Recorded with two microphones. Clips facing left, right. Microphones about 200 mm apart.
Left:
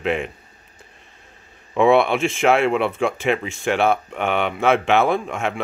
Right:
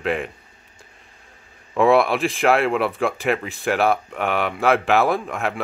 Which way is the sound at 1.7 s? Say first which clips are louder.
Left 1 dB; centre (ahead or behind).